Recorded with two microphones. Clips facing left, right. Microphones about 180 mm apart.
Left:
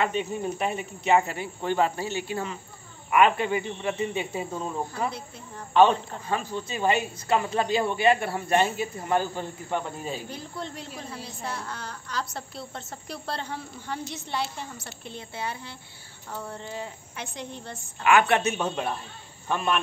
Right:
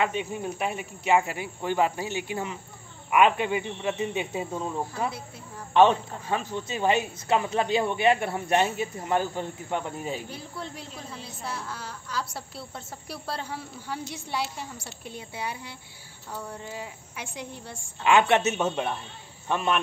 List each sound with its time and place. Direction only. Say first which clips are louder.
0.0 s a woman's voice: left 1 dB; 10° right (ahead or behind)
4.6 s speech: even; 5° right (ahead or behind)
5.7 s a woman's voice: even; 20° right (ahead or behind)
10.3 s a woman's voice: left 2 dB; 5° right (ahead or behind)
18.0 s a woman's voice: even; 25° right (ahead or behind)